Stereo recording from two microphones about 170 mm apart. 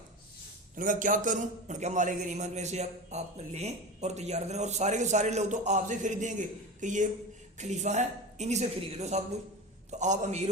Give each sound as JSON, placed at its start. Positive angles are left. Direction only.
{"t": 0.8, "sound": "a man's voice", "side_deg": -50}